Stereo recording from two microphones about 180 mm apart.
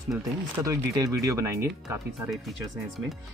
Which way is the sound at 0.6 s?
20° right (ahead or behind).